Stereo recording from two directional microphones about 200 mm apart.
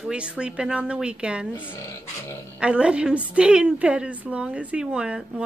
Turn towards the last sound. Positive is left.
turn(degrees=-5)  # may be behind; listen again after turning